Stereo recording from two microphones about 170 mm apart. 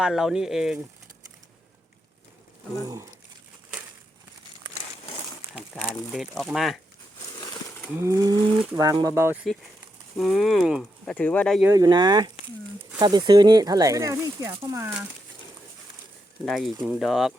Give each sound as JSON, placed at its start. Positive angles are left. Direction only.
{"t": 0.0, "sound": "speech", "side_deg": -5}
{"t": 2.8, "sound": "speech", "side_deg": -20}
{"t": 6.1, "sound": "speech", "side_deg": 5}
{"t": 7.4, "sound": "a sound", "side_deg": 15}
{"t": 7.9, "sound": "speech", "side_deg": -15}
{"t": 10.2, "sound": "speech", "side_deg": 0}
{"t": 11.0, "sound": "speech", "side_deg": 5}
{"t": 11.6, "sound": "speech", "side_deg": -20}
{"t": 16.5, "sound": "speech", "side_deg": 0}